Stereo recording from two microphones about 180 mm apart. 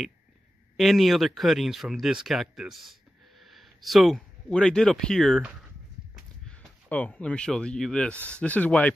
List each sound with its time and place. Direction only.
0.7 s speech: centre (ahead or behind)